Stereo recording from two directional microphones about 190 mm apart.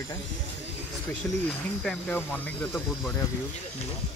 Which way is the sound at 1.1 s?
5° left (ahead or behind).